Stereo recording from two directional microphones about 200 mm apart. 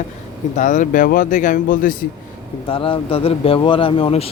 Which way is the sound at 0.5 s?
40° left (ahead or behind).